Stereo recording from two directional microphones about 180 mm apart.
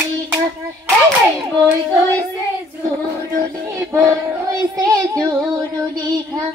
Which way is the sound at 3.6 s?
15° right (ahead or behind).